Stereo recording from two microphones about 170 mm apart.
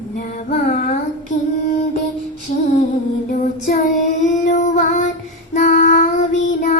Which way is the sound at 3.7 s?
50° left (ahead or behind).